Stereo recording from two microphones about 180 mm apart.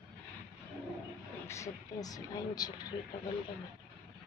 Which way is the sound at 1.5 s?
20° left (ahead or behind).